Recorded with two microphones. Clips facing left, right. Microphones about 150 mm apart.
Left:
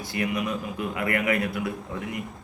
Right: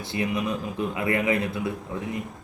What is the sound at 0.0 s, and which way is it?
A man's voice, 25° right (ahead or behind).